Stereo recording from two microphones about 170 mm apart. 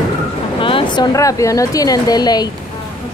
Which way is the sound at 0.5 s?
30° left (ahead or behind).